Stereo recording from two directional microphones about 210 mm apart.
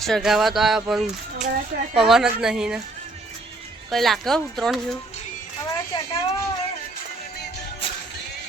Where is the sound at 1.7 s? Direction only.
45° right (ahead or behind).